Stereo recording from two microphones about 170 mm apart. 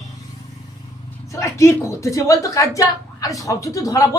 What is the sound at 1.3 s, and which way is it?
A woman's voice, 20° left (ahead or behind).